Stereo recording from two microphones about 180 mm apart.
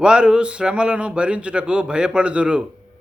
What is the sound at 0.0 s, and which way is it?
A man's voice, 5° right (ahead or behind).